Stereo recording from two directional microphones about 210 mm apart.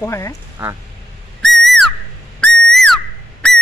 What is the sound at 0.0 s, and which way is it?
Speech, 15° left (ahead or behind).